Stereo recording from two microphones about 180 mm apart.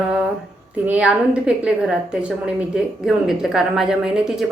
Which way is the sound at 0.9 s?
5° right (ahead or behind).